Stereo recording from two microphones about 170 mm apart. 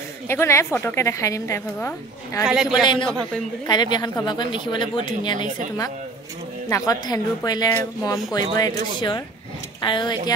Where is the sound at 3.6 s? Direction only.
25° left (ahead or behind).